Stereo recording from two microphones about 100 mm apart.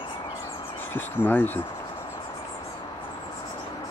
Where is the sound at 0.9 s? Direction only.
20° left (ahead or behind).